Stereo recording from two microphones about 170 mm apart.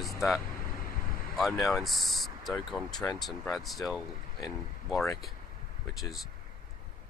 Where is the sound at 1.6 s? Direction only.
Centre (ahead or behind).